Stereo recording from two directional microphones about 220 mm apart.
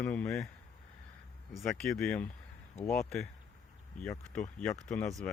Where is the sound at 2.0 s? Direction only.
5° left (ahead or behind).